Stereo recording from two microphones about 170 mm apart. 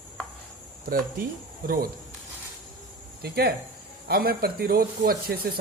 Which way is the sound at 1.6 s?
60° right (ahead or behind).